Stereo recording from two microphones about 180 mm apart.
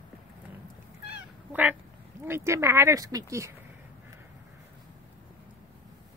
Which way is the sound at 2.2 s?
15° right (ahead or behind).